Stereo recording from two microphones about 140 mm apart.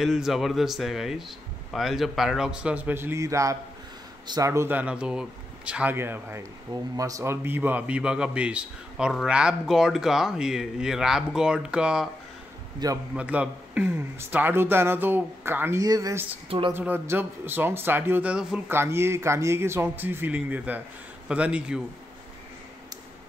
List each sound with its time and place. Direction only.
0.0 s a man's voice: centre (ahead or behind)
13.1 s speech: 10° right (ahead or behind); by 16.2 s 25° right (ahead or behind)
16.4 s speech: 40° right (ahead or behind)
16.7 s speech: 15° right (ahead or behind)